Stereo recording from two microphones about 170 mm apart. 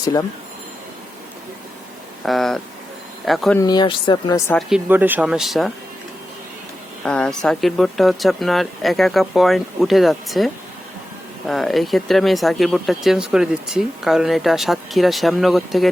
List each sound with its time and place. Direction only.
2.2 s speech: centre (ahead or behind)
3.6 s speech: 25° left (ahead or behind)
4.7 s speech: 10° right (ahead or behind)
7.0 s speech: 5° left (ahead or behind)